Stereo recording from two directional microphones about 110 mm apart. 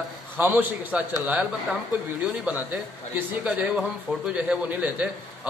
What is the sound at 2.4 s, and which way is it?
A man's voice, 15° right (ahead or behind).